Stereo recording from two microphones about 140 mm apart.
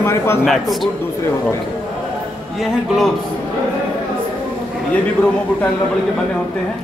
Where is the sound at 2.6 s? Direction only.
Centre (ahead or behind).